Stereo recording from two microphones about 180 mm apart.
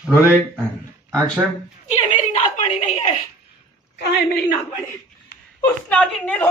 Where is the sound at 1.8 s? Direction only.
40° left (ahead or behind).